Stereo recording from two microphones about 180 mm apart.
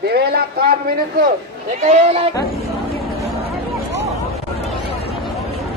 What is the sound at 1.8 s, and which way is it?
Speech, 40° right (ahead or behind).